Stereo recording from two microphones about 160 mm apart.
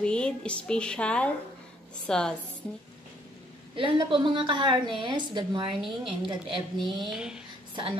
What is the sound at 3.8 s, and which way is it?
A woman's voice, 30° right (ahead or behind).